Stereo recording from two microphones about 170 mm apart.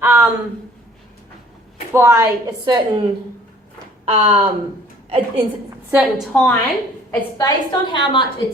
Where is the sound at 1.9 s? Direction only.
15° right (ahead or behind).